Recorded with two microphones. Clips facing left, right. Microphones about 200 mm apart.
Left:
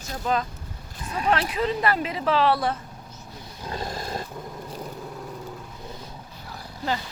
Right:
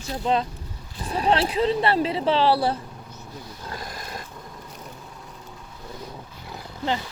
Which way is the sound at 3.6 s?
25° left (ahead or behind).